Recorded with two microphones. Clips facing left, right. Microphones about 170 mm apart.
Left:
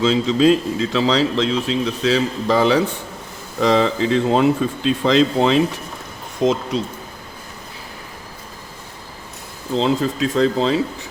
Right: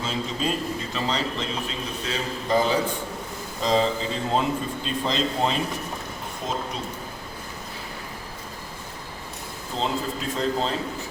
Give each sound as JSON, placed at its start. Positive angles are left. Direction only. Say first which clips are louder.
{"t": 0.0, "sound": "a man's voice", "louder": "left 13 dB", "side_deg": 90}
{"t": 9.7, "sound": "speech", "louder": "left 9 dB", "side_deg": 90}